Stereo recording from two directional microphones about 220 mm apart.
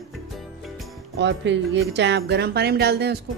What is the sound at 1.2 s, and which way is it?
A man's voice, 55° right (ahead or behind).